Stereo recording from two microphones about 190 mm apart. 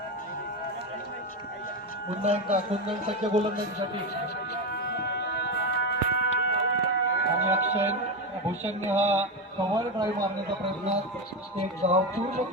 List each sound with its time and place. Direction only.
2.2 s speech: 35° right (ahead or behind)
4.9 s music: 60° left (ahead or behind)
7.4 s music: 10° right (ahead or behind)
8.4 s speech: 10° right (ahead or behind)
11.8 s speech: 30° right (ahead or behind)